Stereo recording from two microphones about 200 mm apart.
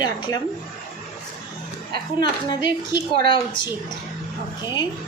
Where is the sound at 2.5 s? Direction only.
20° left (ahead or behind).